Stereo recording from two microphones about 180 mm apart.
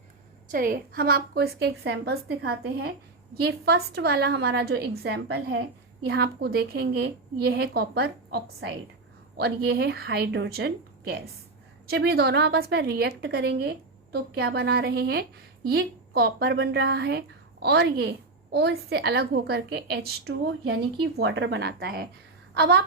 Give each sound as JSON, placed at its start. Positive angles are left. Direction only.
{"t": 0.4, "sound": "a woman's voice", "side_deg": -50}
{"t": 11.9, "sound": "a woman's voice", "side_deg": -65}